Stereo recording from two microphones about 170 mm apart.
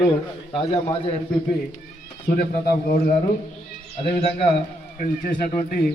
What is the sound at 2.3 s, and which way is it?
Speech, 65° left (ahead or behind).